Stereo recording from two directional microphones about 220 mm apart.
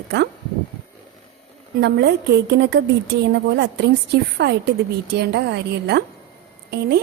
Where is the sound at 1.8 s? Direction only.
50° right (ahead or behind).